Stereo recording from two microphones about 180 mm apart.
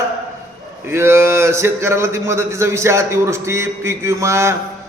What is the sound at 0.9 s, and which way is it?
A man's voice, 15° right (ahead or behind).